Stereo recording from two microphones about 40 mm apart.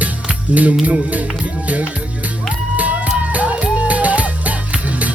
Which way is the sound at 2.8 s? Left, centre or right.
Right.